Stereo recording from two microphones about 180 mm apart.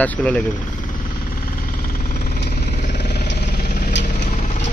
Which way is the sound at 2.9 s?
65° left (ahead or behind).